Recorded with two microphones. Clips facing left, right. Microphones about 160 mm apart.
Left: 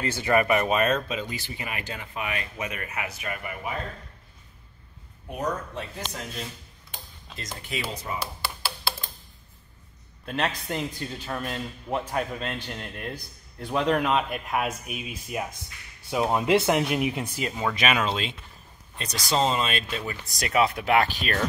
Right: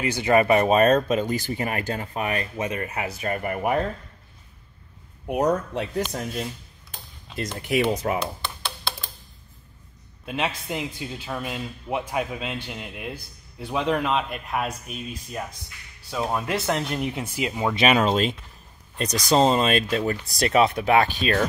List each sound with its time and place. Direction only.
0.0 s speech: 15° right (ahead or behind); by 3.8 s 55° right (ahead or behind)
5.3 s speech: 65° right (ahead or behind)
7.6 s speech: 70° right (ahead or behind)
8.2 s tap: 5° left (ahead or behind)
10.2 s a man's voice: 5° right (ahead or behind)
15.6 s speech: 20° left (ahead or behind)
16.8 s a man's voice: 5° left (ahead or behind)
17.2 s speech: 10° right (ahead or behind)
17.7 s speech: 30° right (ahead or behind)
20.3 s speech: 30° right (ahead or behind)